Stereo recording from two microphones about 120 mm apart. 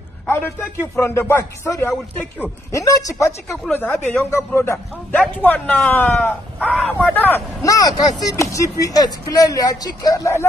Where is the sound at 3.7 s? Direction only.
15° left (ahead or behind).